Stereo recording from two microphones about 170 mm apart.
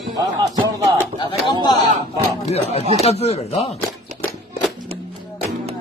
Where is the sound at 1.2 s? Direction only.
25° left (ahead or behind).